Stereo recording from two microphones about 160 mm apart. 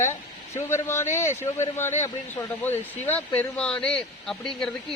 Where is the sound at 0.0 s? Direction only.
15° left (ahead or behind).